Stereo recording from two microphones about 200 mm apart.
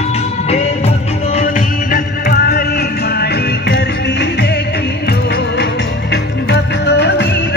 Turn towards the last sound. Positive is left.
turn(degrees=55)  # may be behind; listen again after turning